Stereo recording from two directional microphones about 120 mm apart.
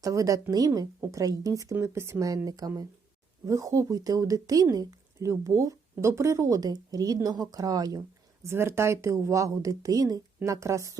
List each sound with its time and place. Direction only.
0.0 s speech: 25° right (ahead or behind)